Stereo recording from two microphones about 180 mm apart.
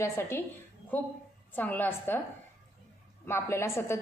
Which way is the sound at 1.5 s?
10° left (ahead or behind).